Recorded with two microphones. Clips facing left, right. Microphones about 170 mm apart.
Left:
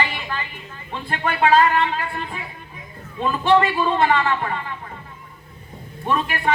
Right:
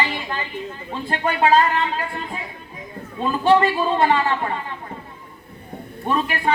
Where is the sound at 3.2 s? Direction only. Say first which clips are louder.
Right 1 dB; 35° right (ahead or behind).